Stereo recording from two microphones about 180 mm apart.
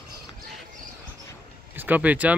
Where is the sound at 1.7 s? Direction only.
10° right (ahead or behind).